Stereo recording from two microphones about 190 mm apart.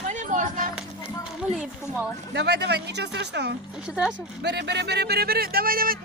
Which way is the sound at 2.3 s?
65° right (ahead or behind).